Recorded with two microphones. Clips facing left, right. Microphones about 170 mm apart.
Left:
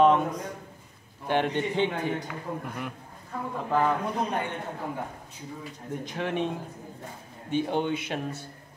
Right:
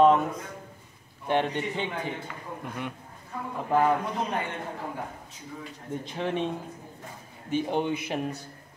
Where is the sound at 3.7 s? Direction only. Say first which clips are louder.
Right 2 dB; 15° right (ahead or behind).